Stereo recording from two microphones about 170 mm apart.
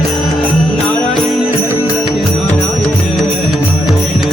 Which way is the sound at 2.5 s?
5° left (ahead or behind).